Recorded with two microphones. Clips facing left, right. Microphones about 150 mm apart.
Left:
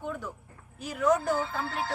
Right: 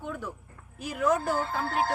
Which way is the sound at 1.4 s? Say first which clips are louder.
Right 3 dB; 50° right (ahead or behind).